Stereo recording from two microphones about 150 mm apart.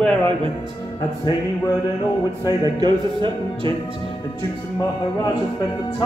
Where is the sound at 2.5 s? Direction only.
30° right (ahead or behind).